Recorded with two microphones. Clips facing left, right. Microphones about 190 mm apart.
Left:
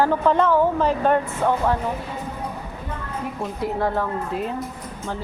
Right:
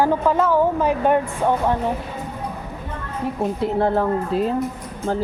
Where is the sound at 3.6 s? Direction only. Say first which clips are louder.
Right 3 dB; 30° right (ahead or behind).